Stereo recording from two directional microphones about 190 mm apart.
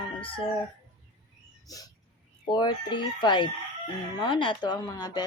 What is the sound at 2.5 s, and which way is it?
Speech, 25° left (ahead or behind).